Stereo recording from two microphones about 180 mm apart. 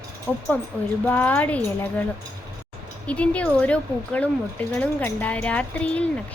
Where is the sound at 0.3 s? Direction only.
10° left (ahead or behind).